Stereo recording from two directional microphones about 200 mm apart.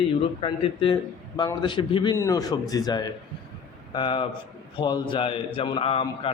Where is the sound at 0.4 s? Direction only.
25° left (ahead or behind).